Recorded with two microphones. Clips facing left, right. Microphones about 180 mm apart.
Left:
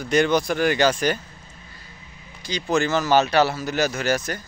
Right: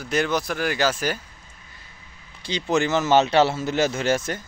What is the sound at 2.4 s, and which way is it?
Speech, 25° right (ahead or behind).